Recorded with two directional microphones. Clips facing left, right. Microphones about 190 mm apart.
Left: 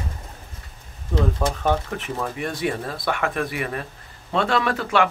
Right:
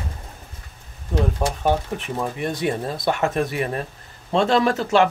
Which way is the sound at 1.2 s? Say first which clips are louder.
Even; 15° right (ahead or behind).